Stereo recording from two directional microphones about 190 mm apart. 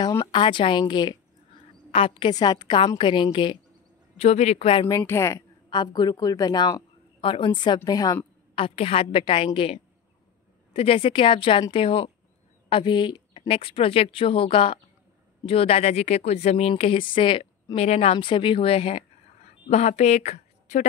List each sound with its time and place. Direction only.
0.0 s a woman's voice: 20° left (ahead or behind); by 20.8 s 40° left (ahead or behind)